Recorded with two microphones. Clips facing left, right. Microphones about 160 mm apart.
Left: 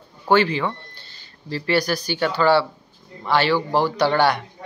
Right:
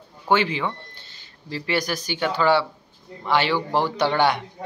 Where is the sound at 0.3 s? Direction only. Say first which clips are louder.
Left 3 dB; 20° right (ahead or behind).